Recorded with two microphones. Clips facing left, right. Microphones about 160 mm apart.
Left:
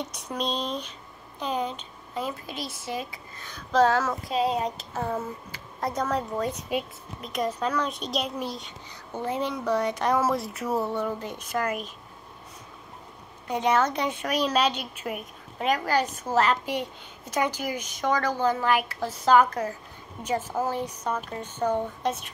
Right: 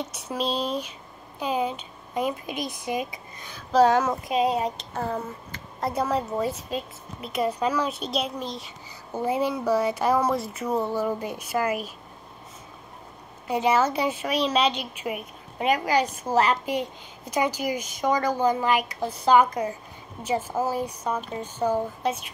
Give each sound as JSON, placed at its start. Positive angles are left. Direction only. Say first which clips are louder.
{"t": 0.0, "sound": "speech", "louder": "right 2 dB", "side_deg": -5}
{"t": 11.1, "sound": "a woman's voice", "louder": "right 3 dB", "side_deg": -10}
{"t": 13.5, "sound": "a woman's voice", "louder": "right 2 dB", "side_deg": -5}
{"t": 14.3, "sound": "a woman's voice", "louder": "even", "side_deg": 5}